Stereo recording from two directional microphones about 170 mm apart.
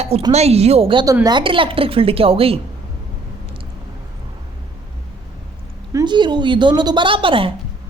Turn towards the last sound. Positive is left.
turn(degrees=-30)  # may be behind; listen again after turning